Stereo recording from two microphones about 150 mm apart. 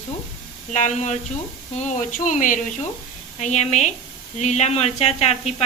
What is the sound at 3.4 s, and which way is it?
A woman's voice, 50° left (ahead or behind).